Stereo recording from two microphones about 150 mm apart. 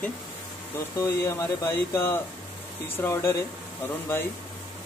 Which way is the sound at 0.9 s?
20° left (ahead or behind).